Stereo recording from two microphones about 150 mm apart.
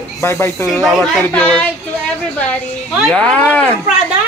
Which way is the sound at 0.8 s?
5° left (ahead or behind).